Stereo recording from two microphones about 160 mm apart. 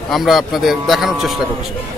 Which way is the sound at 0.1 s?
Centre (ahead or behind).